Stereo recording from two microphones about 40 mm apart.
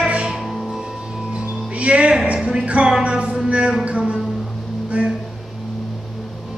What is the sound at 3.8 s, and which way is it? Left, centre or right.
Music, right.